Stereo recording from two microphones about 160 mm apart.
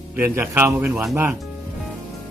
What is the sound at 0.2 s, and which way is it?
Speech, 15° right (ahead or behind).